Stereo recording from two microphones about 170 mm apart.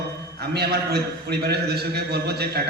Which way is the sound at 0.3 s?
70° right (ahead or behind).